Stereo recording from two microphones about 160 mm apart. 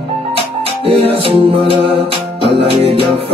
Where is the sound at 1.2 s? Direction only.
35° right (ahead or behind).